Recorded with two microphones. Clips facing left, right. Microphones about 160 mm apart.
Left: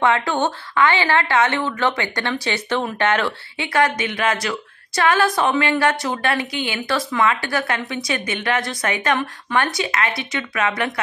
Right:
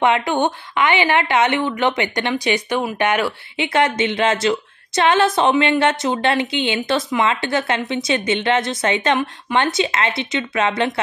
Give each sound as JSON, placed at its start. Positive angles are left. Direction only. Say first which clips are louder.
{"t": 0.0, "sound": "a woman's voice", "louder": "right 2 dB", "side_deg": -20}
{"t": 3.6, "sound": "a woman's voice", "louder": "right 2 dB", "side_deg": -25}